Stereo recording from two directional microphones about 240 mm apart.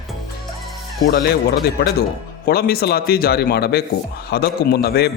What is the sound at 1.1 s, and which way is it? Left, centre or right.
A man's voice, left.